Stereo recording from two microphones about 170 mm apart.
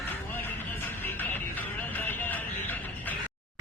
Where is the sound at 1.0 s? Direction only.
10° left (ahead or behind).